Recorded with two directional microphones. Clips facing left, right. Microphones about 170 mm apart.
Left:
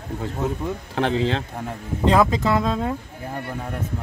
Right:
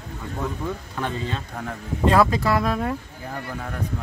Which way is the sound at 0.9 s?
80° left.